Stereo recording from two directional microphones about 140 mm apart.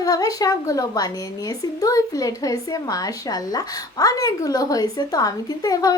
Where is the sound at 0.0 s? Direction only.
25° left (ahead or behind).